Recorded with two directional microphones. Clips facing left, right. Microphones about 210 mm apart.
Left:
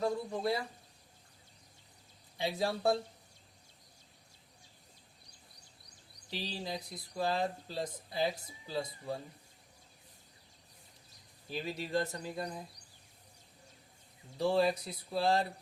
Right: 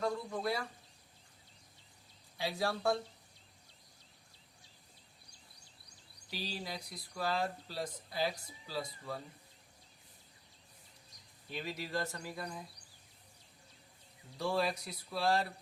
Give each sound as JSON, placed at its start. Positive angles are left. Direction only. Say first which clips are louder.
{"t": 0.0, "sound": "a sound", "louder": "left 2 dB", "side_deg": 25}
{"t": 2.4, "sound": "speech", "louder": "left 2 dB", "side_deg": 20}
{"t": 6.3, "sound": "speech", "louder": "left 3 dB", "side_deg": 25}
{"t": 11.5, "sound": "speech", "louder": "left 4 dB", "side_deg": 25}
{"t": 14.3, "sound": "speech", "louder": "left 5 dB", "side_deg": 25}